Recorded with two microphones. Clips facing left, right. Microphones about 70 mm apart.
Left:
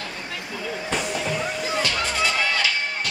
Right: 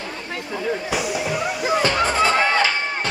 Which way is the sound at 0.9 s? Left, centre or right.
Centre.